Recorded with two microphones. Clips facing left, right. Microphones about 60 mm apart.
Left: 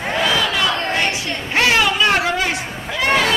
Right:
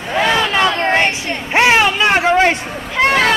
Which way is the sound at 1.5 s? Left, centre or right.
Right.